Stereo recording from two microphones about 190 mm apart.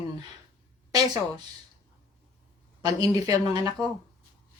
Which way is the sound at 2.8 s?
20° right (ahead or behind).